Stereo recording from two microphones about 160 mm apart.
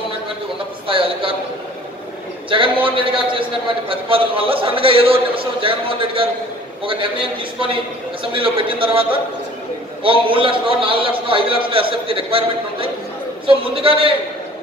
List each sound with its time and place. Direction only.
0.8 s a man's voice: 35° right (ahead or behind)
2.5 s a man's voice: 35° right (ahead or behind)